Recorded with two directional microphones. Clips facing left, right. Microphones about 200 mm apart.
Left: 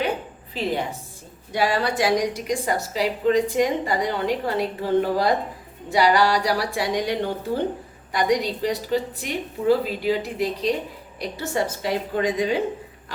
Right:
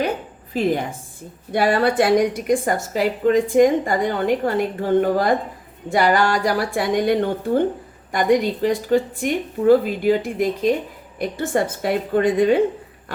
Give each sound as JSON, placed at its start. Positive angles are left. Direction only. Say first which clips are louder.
{"t": 0.5, "sound": "a woman's voice", "louder": "right 5 dB", "side_deg": -45}